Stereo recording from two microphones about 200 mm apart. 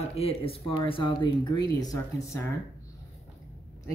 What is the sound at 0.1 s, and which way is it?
Speech, 30° left (ahead or behind).